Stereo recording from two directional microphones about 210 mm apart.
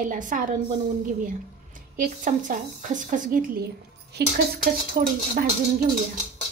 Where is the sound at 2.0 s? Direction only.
40° right (ahead or behind).